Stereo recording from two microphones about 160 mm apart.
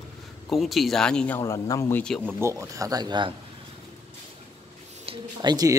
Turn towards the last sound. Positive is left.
turn(degrees=-25)  # may be behind; listen again after turning